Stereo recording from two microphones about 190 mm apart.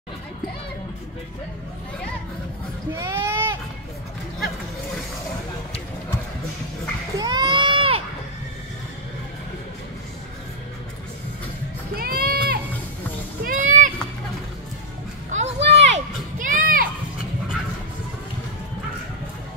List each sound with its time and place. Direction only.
2.9 s speech: 10° right (ahead or behind)
7.2 s run: 20° right (ahead or behind)
11.9 s music: 50° right (ahead or behind)
13.4 s a sound: 45° right (ahead or behind)
15.3 s children playing: 35° right (ahead or behind)